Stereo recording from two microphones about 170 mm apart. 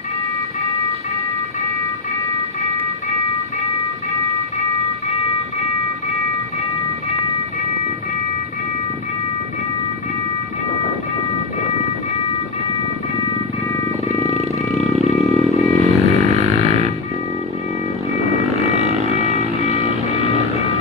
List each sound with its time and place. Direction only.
14.0 s vehicle: 40° right (ahead or behind)
15.1 s vehicle: centre (ahead or behind)
19.1 s vehicle: 40° left (ahead or behind)